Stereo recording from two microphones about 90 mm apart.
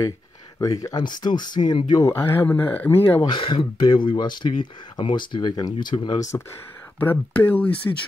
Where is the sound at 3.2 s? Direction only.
65° left (ahead or behind).